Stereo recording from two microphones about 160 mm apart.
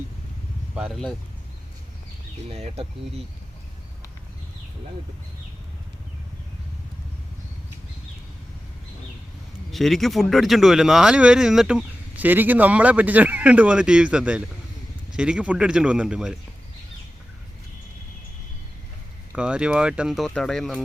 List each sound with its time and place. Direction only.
0.8 s speech: centre (ahead or behind)
2.5 s speech: 40° right (ahead or behind)
9.7 s speech: centre (ahead or behind)
19.3 s speech: 5° right (ahead or behind)